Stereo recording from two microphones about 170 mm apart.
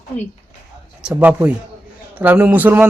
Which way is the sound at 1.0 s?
10° right (ahead or behind).